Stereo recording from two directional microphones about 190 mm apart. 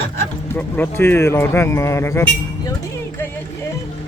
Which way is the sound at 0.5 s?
10° left (ahead or behind).